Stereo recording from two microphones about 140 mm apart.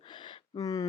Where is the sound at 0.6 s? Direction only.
25° left (ahead or behind).